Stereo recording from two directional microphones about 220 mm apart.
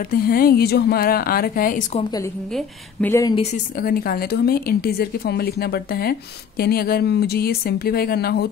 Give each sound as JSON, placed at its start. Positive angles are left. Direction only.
{"t": 0.1, "sound": "a woman's voice", "side_deg": 40}
{"t": 2.5, "sound": "speech", "side_deg": 10}
{"t": 3.3, "sound": "a woman's voice", "side_deg": 40}